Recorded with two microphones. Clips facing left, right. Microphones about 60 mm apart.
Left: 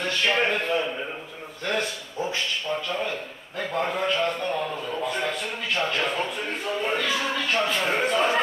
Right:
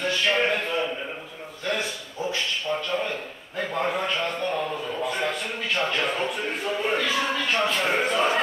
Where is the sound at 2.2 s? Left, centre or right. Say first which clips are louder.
Even; left.